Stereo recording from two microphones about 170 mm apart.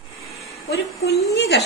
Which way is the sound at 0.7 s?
75° left (ahead or behind).